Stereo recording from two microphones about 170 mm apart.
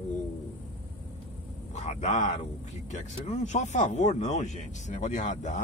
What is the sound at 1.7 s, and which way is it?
Speech, 45° left (ahead or behind).